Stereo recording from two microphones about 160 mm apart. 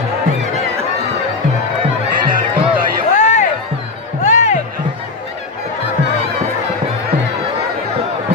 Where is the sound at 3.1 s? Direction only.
50° left (ahead or behind).